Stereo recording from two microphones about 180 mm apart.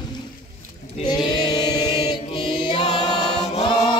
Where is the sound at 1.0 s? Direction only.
25° left (ahead or behind).